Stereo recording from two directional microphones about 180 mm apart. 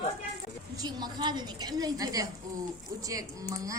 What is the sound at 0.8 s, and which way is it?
A woman's voice, 20° right (ahead or behind).